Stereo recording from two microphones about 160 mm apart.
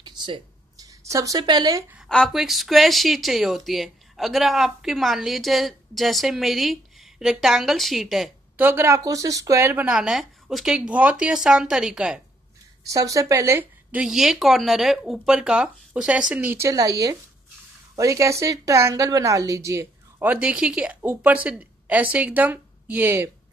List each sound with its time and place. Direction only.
0.0 s a sound: 30° right (ahead or behind)
2.0 s speech: 5° left (ahead or behind)
8.6 s a woman's voice: 15° right (ahead or behind)
9.8 s speech: 5° right (ahead or behind)
12.8 s a woman's voice: 20° right (ahead or behind)
14.0 s a woman's voice: centre (ahead or behind)